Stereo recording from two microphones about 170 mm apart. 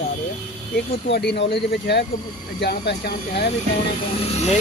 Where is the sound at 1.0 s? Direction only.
80° left.